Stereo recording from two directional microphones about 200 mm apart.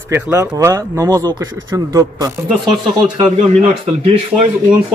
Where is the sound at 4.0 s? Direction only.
30° right (ahead or behind).